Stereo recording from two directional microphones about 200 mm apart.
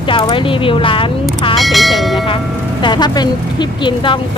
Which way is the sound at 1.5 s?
Centre (ahead or behind).